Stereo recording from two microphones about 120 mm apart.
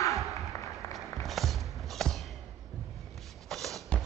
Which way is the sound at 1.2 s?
Centre (ahead or behind).